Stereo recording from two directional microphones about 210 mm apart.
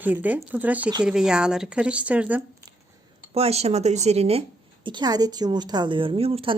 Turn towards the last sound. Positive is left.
turn(degrees=-25)  # may be behind; listen again after turning